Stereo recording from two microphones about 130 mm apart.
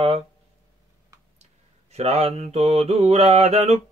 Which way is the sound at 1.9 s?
55° right (ahead or behind).